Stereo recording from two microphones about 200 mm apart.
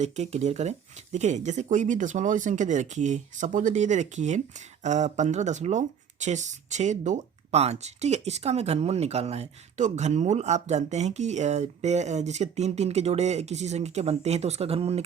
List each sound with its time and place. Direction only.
0.0 s speech: 35° right (ahead or behind)